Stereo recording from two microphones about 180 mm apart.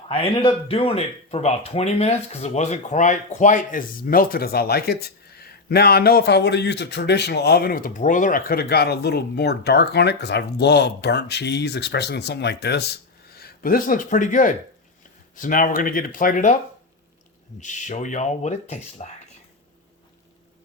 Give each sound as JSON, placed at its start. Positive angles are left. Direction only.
{"t": 0.1, "sound": "speech", "side_deg": 30}
{"t": 13.3, "sound": "speech", "side_deg": 55}
{"t": 17.6, "sound": "speech", "side_deg": 40}